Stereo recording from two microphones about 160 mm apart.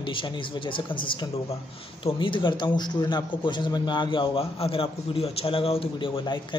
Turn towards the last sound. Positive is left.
turn(degrees=30)  # may be behind; listen again after turning